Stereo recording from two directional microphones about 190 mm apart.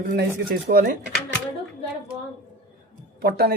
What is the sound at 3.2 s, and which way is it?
Speech, 55° right (ahead or behind).